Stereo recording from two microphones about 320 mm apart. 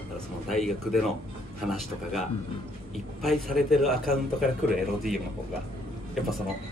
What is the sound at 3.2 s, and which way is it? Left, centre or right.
A man's voice, centre.